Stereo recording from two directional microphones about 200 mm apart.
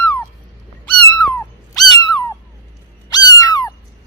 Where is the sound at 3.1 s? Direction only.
20° left (ahead or behind).